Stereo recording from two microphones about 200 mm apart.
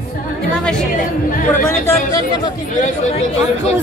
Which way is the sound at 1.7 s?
15° left (ahead or behind).